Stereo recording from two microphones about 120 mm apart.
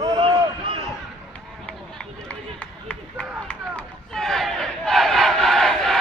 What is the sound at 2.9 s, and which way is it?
Run, 15° left (ahead or behind).